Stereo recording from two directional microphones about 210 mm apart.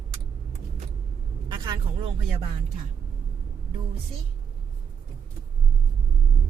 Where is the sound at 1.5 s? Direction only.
20° right (ahead or behind).